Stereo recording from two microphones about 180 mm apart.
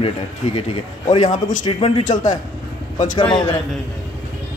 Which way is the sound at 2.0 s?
45° left (ahead or behind).